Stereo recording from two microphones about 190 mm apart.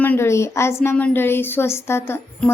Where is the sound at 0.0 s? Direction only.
10° left (ahead or behind).